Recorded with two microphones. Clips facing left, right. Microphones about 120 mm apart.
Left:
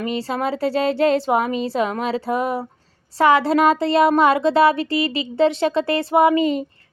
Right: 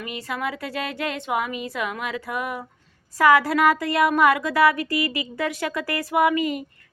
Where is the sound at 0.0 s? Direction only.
30° left (ahead or behind).